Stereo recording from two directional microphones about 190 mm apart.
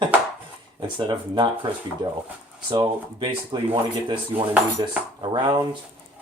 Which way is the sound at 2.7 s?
25° right (ahead or behind).